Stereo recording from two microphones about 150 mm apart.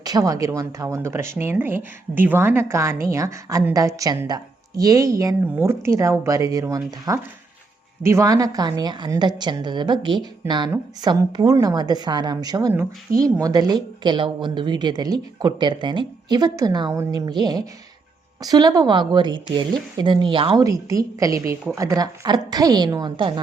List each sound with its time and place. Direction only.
0.0 s a woman's voice: 25° right (ahead or behind)
20.6 s a woman's voice: 20° right (ahead or behind)